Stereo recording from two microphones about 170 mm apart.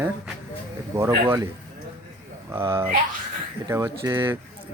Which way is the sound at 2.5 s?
15° right (ahead or behind).